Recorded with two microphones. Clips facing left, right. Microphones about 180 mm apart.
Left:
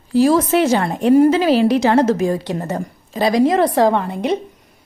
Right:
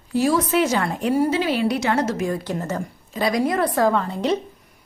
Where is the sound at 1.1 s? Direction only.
50° left (ahead or behind).